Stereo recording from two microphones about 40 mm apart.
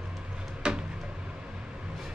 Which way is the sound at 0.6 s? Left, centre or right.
Right.